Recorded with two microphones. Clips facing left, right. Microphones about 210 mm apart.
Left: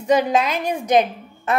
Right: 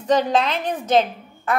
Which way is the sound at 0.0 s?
10° left (ahead or behind).